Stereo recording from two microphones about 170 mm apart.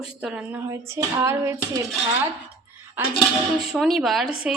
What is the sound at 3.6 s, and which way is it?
Speech, centre (ahead or behind).